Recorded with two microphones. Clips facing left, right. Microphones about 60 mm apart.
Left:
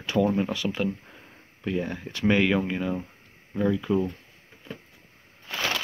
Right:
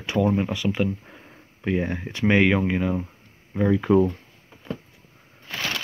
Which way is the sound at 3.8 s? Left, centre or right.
Right.